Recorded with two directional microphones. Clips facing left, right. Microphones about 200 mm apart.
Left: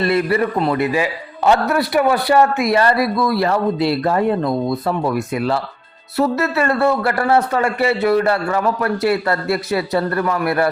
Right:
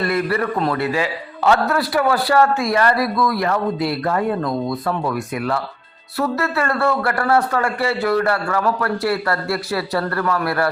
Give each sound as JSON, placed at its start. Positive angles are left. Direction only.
{"t": 0.0, "sound": "a man's voice", "side_deg": 25}